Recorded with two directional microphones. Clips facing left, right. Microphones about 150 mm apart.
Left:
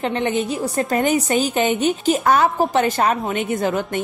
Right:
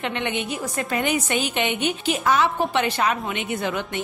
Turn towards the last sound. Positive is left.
turn(degrees=40)  # may be behind; listen again after turning